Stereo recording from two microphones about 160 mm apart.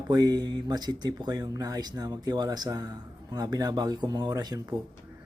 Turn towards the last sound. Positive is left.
turn(degrees=-25)  # may be behind; listen again after turning